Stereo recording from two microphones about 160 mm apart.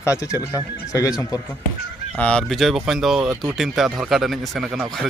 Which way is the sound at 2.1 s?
5° left (ahead or behind).